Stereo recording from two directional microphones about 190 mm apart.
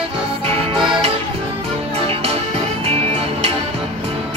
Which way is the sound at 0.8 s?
5° right (ahead or behind).